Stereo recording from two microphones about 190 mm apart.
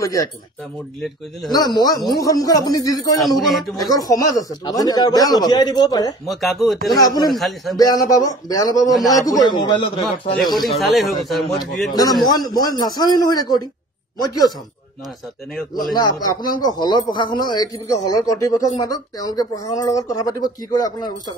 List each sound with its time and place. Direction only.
1.5 s a man's voice: 20° left (ahead or behind)
3.2 s speech: centre (ahead or behind)
3.7 s a man's voice: 20° left (ahead or behind)
6.2 s speech: centre (ahead or behind)
6.9 s a man's voice: 20° left (ahead or behind)
7.3 s speech: centre (ahead or behind)
7.7 s a man's voice: 20° left (ahead or behind)
10.4 s speech: centre (ahead or behind)
11.9 s a man's voice: 20° left (ahead or behind)
15.9 s a man's voice: 20° left (ahead or behind)